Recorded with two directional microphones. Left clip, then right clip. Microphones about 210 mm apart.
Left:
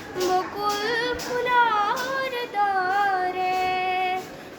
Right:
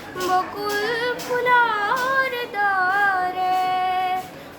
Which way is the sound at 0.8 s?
15° right (ahead or behind).